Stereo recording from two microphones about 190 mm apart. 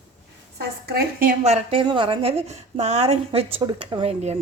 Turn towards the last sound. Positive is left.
turn(degrees=-35)  # may be behind; listen again after turning